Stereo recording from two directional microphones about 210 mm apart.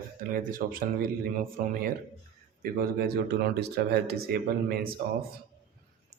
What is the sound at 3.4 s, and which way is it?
Speech, 50° right (ahead or behind).